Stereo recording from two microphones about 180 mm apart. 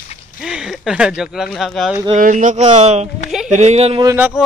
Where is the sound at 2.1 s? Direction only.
45° right (ahead or behind).